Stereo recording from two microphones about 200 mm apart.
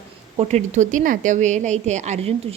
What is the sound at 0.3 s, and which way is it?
A woman's voice, 35° right (ahead or behind).